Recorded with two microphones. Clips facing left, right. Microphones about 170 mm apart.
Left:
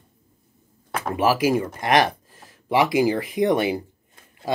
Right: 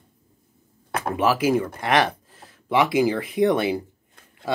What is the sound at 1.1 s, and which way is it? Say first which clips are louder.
Speech: left 1 dB; 10° left (ahead or behind).